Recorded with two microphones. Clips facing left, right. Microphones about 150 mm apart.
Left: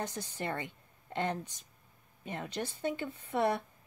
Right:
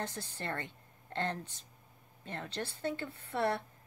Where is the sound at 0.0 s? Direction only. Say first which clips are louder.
Left 3 dB; 15° left (ahead or behind).